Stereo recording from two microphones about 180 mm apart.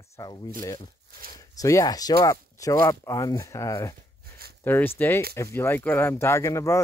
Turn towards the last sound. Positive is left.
turn(degrees=15)  # may be behind; listen again after turning